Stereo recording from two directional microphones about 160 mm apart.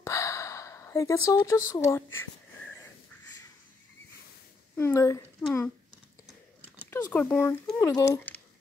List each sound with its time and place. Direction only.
0.0 s gasp: 20° left (ahead or behind)
1.7 s speech: 20° left (ahead or behind)
4.7 s speech: 15° left (ahead or behind)
6.9 s speech: 15° left (ahead or behind)